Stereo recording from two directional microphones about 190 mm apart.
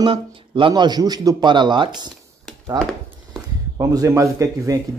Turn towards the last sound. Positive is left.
turn(degrees=-15)  # may be behind; listen again after turning